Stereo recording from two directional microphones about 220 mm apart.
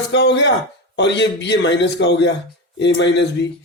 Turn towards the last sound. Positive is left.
turn(degrees=55)  # may be behind; listen again after turning